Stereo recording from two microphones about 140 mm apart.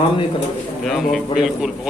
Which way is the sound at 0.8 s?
Centre (ahead or behind).